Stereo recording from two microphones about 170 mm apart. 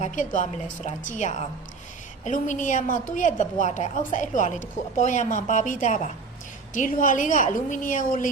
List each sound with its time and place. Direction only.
0.0 s a woman's voice: 50° left (ahead or behind)